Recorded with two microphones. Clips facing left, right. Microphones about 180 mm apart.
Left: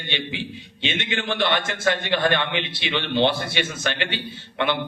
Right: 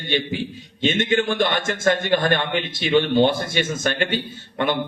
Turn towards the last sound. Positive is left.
turn(degrees=-45)  # may be behind; listen again after turning